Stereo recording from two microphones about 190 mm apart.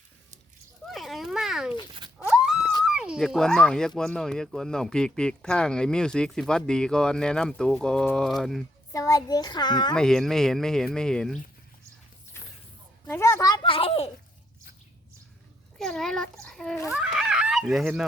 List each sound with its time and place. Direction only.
0.9 s a sound: centre (ahead or behind)
2.8 s speech: 5° right (ahead or behind)
8.9 s a child's voice: 15° left (ahead or behind)
9.9 s speech: 5° left (ahead or behind)
13.1 s a child's voice: 15° left (ahead or behind); by 14.1 s 30° left (ahead or behind)
15.8 s speech: 5° left (ahead or behind)